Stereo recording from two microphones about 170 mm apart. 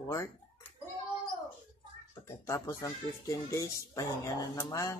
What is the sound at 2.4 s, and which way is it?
Speech, 20° left (ahead or behind).